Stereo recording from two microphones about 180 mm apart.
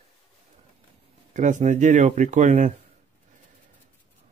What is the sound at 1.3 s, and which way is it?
Speech, 45° right (ahead or behind).